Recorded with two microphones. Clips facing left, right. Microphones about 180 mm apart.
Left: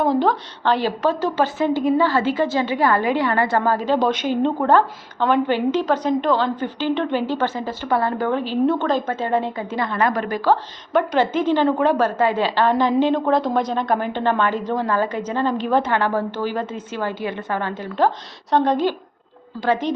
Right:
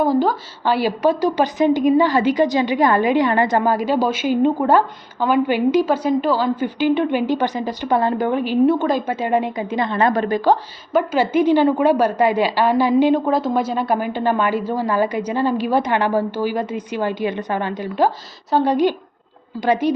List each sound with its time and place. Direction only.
0.0 s a woman's voice: centre (ahead or behind); by 10.6 s 20° right (ahead or behind)
10.9 s a woman's voice: 5° right (ahead or behind)